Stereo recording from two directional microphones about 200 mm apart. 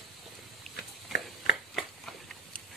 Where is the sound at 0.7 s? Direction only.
55° left (ahead or behind).